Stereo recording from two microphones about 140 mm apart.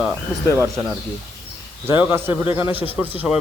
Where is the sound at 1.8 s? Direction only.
15° right (ahead or behind).